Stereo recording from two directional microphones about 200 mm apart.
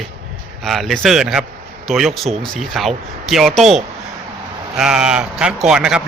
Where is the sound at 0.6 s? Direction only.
Centre (ahead or behind).